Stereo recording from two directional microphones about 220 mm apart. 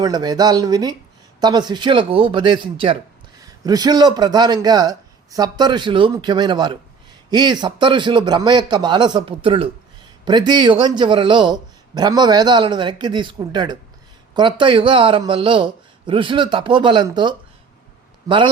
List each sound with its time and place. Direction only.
0.0 s speech: 20° right (ahead or behind)